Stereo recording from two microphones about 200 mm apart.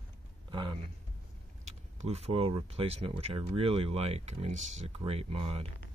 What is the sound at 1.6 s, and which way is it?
Speech, 35° right (ahead or behind).